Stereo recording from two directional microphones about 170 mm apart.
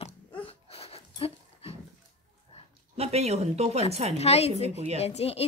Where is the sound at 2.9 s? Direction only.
40° right (ahead or behind).